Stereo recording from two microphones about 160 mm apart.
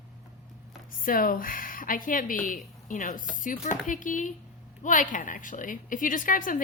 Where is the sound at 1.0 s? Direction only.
60° left (ahead or behind).